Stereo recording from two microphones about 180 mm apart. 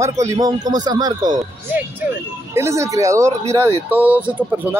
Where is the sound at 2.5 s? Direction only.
15° right (ahead or behind).